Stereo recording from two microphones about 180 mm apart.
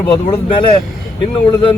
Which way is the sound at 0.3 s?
30° left (ahead or behind).